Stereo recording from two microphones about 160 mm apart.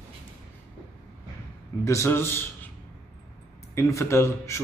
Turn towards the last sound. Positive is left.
turn(degrees=15)  # may be behind; listen again after turning